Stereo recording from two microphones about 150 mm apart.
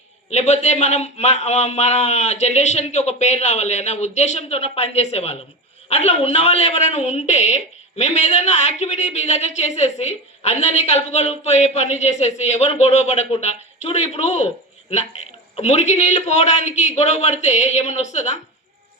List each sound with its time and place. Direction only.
0.3 s a woman's voice: 45° left (ahead or behind)
15.5 s a woman's voice: 45° left (ahead or behind)